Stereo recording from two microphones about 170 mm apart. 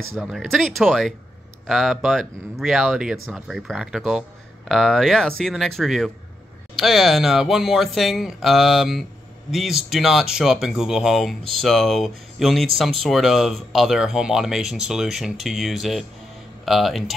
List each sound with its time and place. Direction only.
0.2 s speech: centre (ahead or behind)